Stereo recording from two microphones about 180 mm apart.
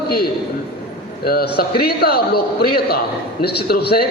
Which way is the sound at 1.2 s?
60° left (ahead or behind).